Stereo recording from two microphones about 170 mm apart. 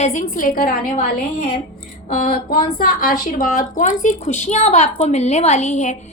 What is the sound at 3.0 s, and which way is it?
A woman's voice, 55° left (ahead or behind).